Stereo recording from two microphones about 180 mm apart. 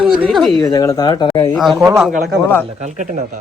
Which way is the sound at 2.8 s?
45° right (ahead or behind).